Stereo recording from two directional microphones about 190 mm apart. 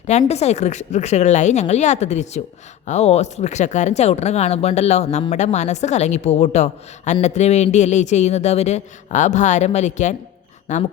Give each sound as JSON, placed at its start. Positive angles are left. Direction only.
{"t": 0.1, "sound": "a woman's voice", "side_deg": 35}